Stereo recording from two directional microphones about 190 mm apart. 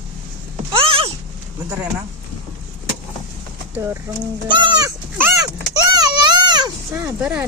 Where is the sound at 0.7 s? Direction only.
30° right (ahead or behind).